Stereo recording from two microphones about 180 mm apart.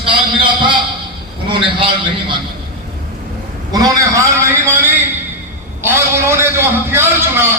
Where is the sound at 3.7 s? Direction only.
20° right (ahead or behind).